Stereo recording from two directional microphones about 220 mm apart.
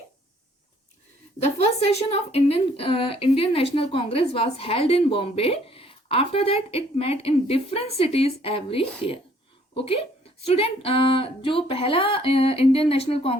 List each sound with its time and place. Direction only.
1.4 s a woman's voice: 30° left (ahead or behind)